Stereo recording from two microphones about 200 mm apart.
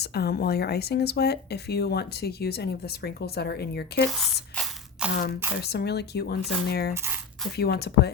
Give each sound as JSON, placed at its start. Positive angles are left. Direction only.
{"t": 0.0, "sound": "speech", "side_deg": 55}
{"t": 4.5, "sound": "ratchet", "side_deg": -5}
{"t": 5.6, "sound": "speech", "side_deg": 55}
{"t": 6.9, "sound": "speech", "side_deg": -10}
{"t": 7.5, "sound": "speech", "side_deg": 50}